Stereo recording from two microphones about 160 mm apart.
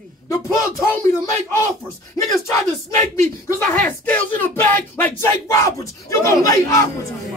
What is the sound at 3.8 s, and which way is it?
Speech, 10° left (ahead or behind).